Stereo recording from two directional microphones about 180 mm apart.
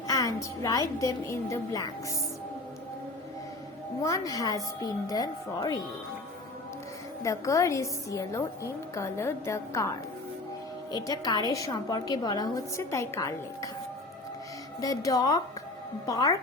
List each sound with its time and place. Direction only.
0.1 s a woman's voice: 20° left (ahead or behind)
4.0 s a woman's voice: 20° left (ahead or behind)
7.2 s a woman's voice: 15° left (ahead or behind)
10.9 s a woman's voice: 20° left (ahead or behind)
14.8 s a woman's voice: 20° left (ahead or behind)